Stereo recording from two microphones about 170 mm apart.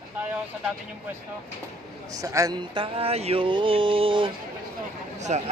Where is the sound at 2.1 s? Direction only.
20° right (ahead or behind).